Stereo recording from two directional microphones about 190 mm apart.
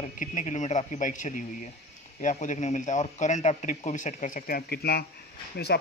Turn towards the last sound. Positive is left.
turn(degrees=60)  # may be behind; listen again after turning